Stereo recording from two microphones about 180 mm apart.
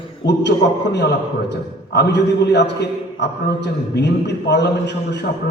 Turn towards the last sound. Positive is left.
turn(degrees=75)  # may be behind; listen again after turning